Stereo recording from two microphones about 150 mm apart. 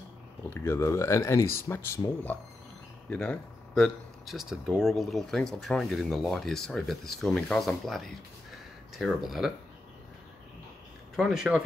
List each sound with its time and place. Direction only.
0.6 s speech: 15° left (ahead or behind)
3.1 s speech: 5° left (ahead or behind)
11.1 s speech: centre (ahead or behind)